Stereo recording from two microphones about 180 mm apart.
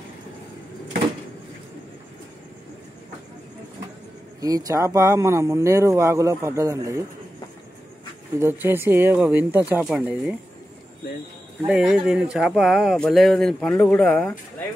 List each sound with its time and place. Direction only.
4.4 s speech: 20° right (ahead or behind)
8.4 s speech: 15° right (ahead or behind)
11.6 s speech: 5° right (ahead or behind)